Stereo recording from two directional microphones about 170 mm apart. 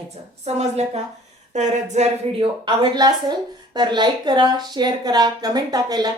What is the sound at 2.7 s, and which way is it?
A woman's voice, 25° right (ahead or behind).